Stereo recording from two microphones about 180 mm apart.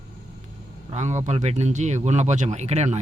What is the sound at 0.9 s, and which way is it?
Speech, 40° right (ahead or behind).